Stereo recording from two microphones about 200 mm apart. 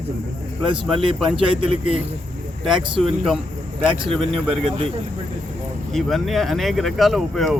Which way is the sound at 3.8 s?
Centre (ahead or behind).